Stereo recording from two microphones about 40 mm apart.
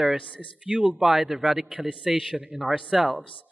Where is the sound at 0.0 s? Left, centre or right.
Centre.